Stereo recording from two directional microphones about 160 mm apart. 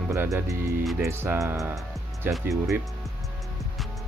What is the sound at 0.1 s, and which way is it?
Speech, 20° right (ahead or behind).